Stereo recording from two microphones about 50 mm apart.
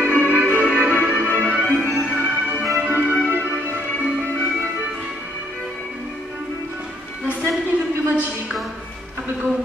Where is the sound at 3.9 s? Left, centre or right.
Left.